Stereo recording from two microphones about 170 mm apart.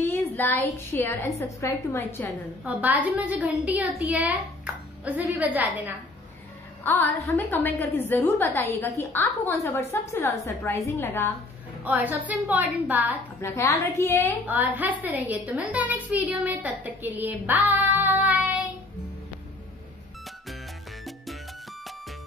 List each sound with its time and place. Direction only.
0.0 s a sound: 10° left (ahead or behind)
0.9 s a woman's voice: 15° left (ahead or behind)
2.6 s a woman's voice: 10° right (ahead or behind)
6.8 s a woman's voice: 10° left (ahead or behind)
11.8 s a woman's voice: 10° right (ahead or behind)
13.4 s a woman's voice: 15° left (ahead or behind)
14.4 s a woman's voice: 10° right (ahead or behind)